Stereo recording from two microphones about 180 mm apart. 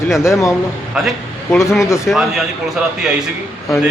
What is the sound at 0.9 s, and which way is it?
A man's voice, 5° right (ahead or behind).